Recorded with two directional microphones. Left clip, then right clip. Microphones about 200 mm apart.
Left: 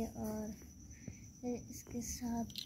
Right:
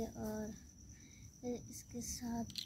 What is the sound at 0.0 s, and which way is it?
Cricket, 20° right (ahead or behind).